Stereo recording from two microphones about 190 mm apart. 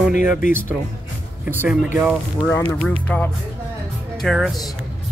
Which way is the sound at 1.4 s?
10° right (ahead or behind).